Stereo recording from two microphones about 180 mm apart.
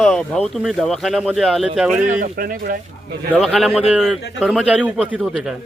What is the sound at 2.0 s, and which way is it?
Speech, 45° right (ahead or behind).